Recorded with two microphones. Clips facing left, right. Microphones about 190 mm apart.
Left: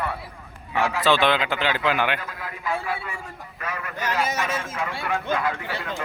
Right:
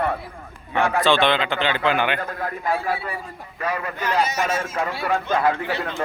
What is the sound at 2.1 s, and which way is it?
Speech, 50° right (ahead or behind).